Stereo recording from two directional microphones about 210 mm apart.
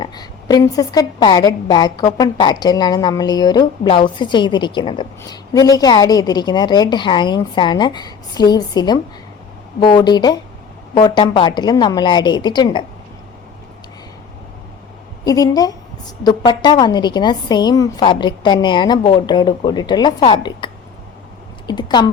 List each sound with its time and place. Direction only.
0.0 s a woman's voice: 20° left (ahead or behind)
15.2 s a woman's voice: 15° left (ahead or behind)
21.7 s a woman's voice: 20° left (ahead or behind)